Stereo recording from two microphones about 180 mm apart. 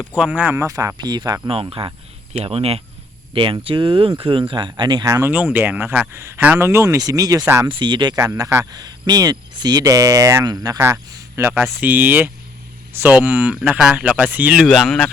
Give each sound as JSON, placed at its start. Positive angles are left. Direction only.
{"t": 0.1, "sound": "speech", "side_deg": -10}